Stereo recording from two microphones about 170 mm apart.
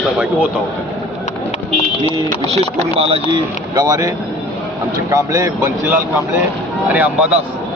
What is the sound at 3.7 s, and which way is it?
Speech, 20° right (ahead or behind).